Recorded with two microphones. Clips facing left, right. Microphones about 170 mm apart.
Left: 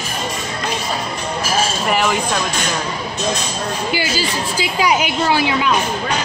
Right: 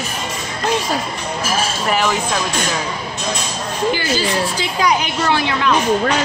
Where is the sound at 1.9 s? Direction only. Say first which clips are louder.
Right 1 dB; centre (ahead or behind).